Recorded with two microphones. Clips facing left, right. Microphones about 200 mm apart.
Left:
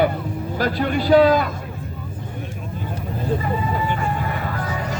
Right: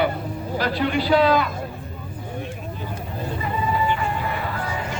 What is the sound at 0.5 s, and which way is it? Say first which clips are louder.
Speech: left 1 dB; 45° left (ahead or behind).